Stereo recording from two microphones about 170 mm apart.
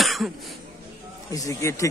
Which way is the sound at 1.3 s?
20° left (ahead or behind).